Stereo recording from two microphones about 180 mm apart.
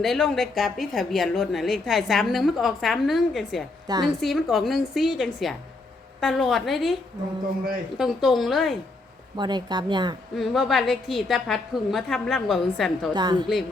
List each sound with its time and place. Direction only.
0.0 s a woman's voice: centre (ahead or behind)
3.8 s speech: 20° right (ahead or behind)
4.2 s a woman's voice: centre (ahead or behind)
7.9 s a woman's voice: centre (ahead or behind)
9.4 s speech: 25° right (ahead or behind)
10.3 s a woman's voice: centre (ahead or behind)
13.1 s speech: 25° right (ahead or behind)